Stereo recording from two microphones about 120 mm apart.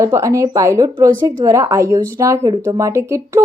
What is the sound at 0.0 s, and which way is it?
Speech, 25° right (ahead or behind).